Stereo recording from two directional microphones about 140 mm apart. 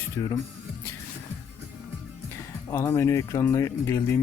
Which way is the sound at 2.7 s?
20° left (ahead or behind).